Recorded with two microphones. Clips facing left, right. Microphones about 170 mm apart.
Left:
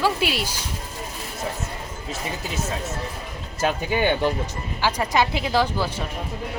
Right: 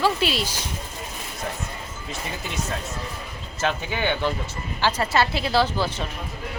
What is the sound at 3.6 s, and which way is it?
Speech, 10° left (ahead or behind).